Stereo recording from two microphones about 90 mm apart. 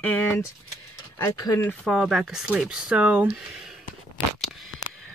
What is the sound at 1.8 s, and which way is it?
Speech, 5° right (ahead or behind).